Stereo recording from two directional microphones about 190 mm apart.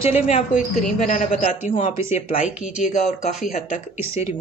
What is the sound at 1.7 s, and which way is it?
Speech, 30° left (ahead or behind).